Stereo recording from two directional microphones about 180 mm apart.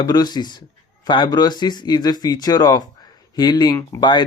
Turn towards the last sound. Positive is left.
turn(degrees=25)  # may be behind; listen again after turning